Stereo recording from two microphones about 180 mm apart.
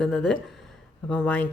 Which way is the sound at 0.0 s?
5° left (ahead or behind).